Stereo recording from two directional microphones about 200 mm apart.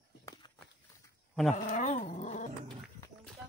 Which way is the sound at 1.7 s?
40° left (ahead or behind).